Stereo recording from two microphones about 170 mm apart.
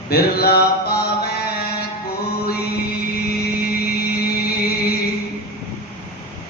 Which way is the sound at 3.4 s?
65° left (ahead or behind).